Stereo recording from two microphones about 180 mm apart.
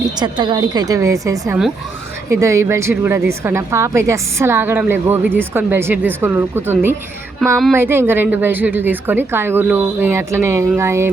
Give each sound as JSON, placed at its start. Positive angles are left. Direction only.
{"t": 0.2, "sound": "a woman's voice", "side_deg": -25}